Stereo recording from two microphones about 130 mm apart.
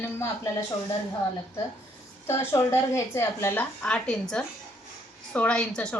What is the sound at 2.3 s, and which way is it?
A woman's voice, 20° left (ahead or behind).